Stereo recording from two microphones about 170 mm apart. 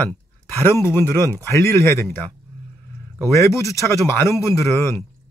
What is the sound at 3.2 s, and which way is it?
A man's voice, 15° left (ahead or behind).